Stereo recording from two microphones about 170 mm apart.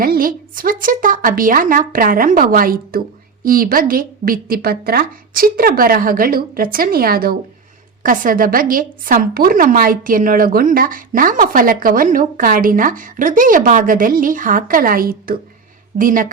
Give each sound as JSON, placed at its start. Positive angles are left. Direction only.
{"t": 0.0, "sound": "a woman's voice", "side_deg": -55}